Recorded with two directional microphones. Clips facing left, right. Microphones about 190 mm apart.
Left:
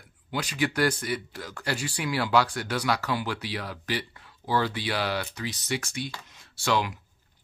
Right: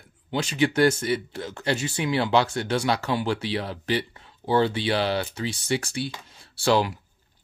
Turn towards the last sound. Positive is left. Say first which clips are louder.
# right 5 dB
turn(degrees=-35)  # may be behind; listen again after turning